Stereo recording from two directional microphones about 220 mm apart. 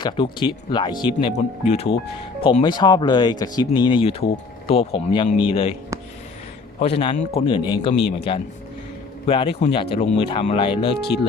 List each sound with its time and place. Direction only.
0.0 s speech: 20° left (ahead or behind)
5.9 s a sound: 15° right (ahead or behind)
6.7 s speech: 25° left (ahead or behind)
9.2 s speech: 25° left (ahead or behind)